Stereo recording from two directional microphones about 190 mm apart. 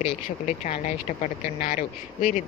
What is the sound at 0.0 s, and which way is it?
Speech, 40° left (ahead or behind).